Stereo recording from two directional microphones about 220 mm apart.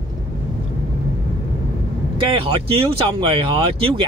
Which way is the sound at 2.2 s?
25° right (ahead or behind).